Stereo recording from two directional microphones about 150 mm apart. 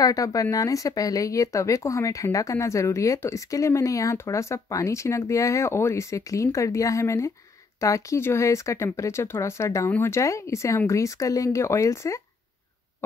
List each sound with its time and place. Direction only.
0.0 s speech: 25° left (ahead or behind)